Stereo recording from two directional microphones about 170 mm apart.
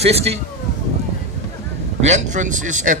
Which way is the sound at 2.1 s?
45° right (ahead or behind).